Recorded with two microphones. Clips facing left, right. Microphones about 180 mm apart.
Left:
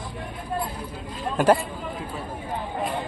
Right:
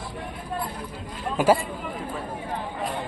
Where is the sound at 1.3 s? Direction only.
5° right (ahead or behind).